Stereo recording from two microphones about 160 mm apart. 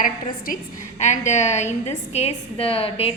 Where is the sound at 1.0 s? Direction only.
45° left (ahead or behind).